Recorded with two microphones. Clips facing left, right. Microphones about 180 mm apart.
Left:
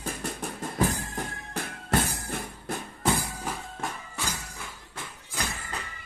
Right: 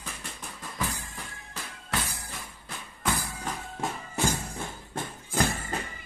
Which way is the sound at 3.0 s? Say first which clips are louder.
Left 4 dB; 20° left (ahead or behind).